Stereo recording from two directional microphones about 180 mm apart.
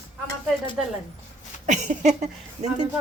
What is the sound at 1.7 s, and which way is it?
Speech, 40° right (ahead or behind).